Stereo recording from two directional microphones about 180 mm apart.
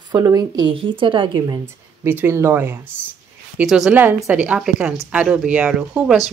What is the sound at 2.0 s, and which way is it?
A woman's voice, 15° right (ahead or behind).